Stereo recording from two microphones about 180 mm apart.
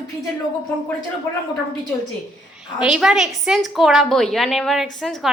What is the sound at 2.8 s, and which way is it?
A woman's voice, 5° right (ahead or behind).